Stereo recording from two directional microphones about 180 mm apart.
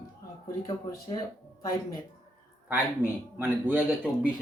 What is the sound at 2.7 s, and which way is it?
Speech, 10° right (ahead or behind).